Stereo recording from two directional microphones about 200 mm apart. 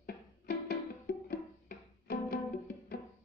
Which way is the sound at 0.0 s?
50° left (ahead or behind).